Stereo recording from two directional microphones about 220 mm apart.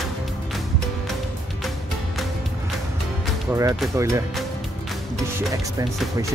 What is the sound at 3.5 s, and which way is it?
Speech, 5° right (ahead or behind).